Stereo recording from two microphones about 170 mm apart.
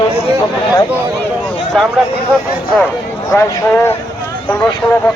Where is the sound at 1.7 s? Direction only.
5° left (ahead or behind).